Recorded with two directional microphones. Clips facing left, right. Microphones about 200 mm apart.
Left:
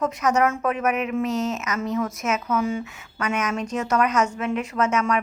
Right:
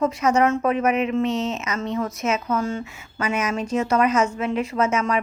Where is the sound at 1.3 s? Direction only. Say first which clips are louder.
Even; 25° right (ahead or behind).